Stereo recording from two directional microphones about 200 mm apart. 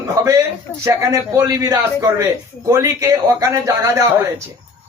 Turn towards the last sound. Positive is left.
turn(degrees=-15)  # may be behind; listen again after turning